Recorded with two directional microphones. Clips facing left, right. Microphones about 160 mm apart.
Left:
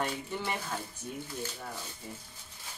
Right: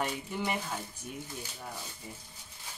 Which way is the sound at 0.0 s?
15° right (ahead or behind).